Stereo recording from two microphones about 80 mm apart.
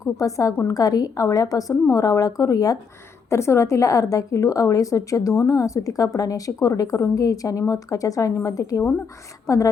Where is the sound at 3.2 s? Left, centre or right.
Left.